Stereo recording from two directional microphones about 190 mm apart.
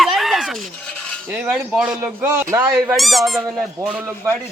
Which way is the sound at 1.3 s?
5° right (ahead or behind).